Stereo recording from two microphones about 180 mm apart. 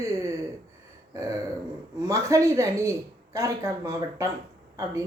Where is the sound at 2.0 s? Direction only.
15° right (ahead or behind).